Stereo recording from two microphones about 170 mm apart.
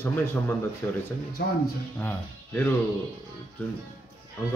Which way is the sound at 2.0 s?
10° left (ahead or behind).